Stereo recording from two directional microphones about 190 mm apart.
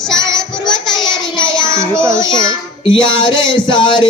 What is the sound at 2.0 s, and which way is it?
Child singing, 15° right (ahead or behind).